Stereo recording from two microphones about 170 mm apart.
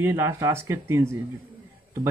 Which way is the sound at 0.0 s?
10° right (ahead or behind).